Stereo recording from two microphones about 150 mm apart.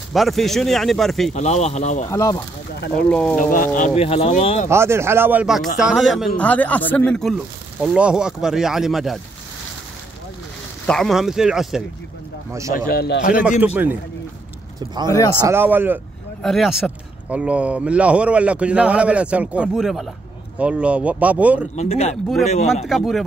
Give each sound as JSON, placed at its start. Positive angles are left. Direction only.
{"t": 0.1, "sound": "speech", "side_deg": 0}
{"t": 1.3, "sound": "speech", "side_deg": 45}
{"t": 2.0, "sound": "speech", "side_deg": 20}
{"t": 3.0, "sound": "speech", "side_deg": 10}
{"t": 3.3, "sound": "speech", "side_deg": 65}
{"t": 3.9, "sound": "speech", "side_deg": 40}
{"t": 4.6, "sound": "a man's voice", "side_deg": -15}
{"t": 10.9, "sound": "speech", "side_deg": 0}
{"t": 12.7, "sound": "a man's voice", "side_deg": 80}
{"t": 15.0, "sound": "speech", "side_deg": 20}
{"t": 15.4, "sound": "a man's voice", "side_deg": -15}
{"t": 16.4, "sound": "a man's voice", "side_deg": 0}
{"t": 21.7, "sound": "speech", "side_deg": 45}
{"t": 22.8, "sound": "speech", "side_deg": 0}